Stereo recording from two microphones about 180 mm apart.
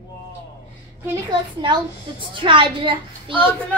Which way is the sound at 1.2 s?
25° right (ahead or behind).